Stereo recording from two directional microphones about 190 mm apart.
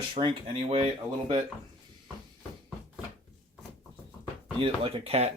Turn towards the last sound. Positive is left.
turn(degrees=-30)  # may be behind; listen again after turning